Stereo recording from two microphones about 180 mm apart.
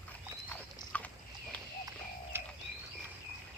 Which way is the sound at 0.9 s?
10° left (ahead or behind).